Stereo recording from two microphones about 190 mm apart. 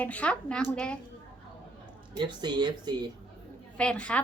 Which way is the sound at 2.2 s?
20° right (ahead or behind).